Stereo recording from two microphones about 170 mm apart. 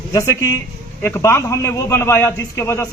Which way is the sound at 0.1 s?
15° left (ahead or behind).